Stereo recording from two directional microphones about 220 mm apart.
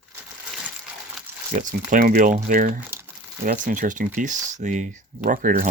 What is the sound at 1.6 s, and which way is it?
Speech, 40° right (ahead or behind).